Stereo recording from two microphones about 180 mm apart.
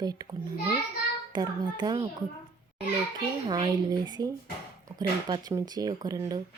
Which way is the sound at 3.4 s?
25° right (ahead or behind).